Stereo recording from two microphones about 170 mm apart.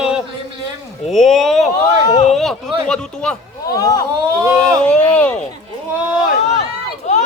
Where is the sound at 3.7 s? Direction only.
20° left (ahead or behind).